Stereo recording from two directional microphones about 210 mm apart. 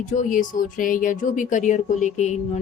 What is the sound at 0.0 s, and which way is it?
Speech, 35° left (ahead or behind).